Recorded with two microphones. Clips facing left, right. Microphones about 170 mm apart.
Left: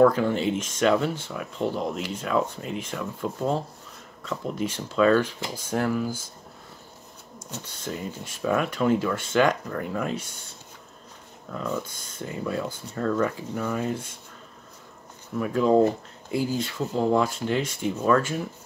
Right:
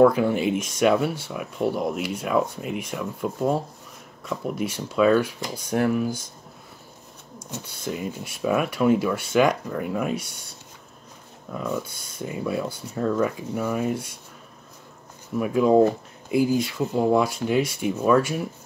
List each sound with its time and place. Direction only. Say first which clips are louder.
0.0 s speech: right 2 dB; 10° right (ahead or behind)
7.3 s speech: right 3 dB; 10° right (ahead or behind)
11.5 s speech: right 2 dB; 10° right (ahead or behind)
15.3 s speech: right 2 dB; 10° right (ahead or behind)